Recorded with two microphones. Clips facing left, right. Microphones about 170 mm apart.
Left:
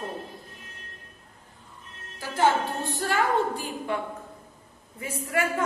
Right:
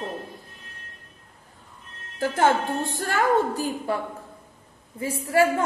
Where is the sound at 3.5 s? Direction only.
35° right (ahead or behind).